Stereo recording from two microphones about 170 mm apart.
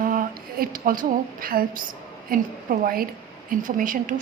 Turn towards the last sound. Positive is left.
turn(degrees=-55)  # may be behind; listen again after turning